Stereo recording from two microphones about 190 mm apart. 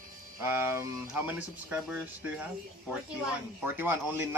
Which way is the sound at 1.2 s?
5° right (ahead or behind).